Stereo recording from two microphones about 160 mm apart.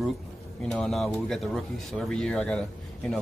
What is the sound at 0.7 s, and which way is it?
A man's voice, centre (ahead or behind).